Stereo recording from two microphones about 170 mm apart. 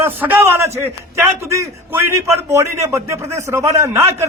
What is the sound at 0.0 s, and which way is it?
A man's voice, 10° right (ahead or behind).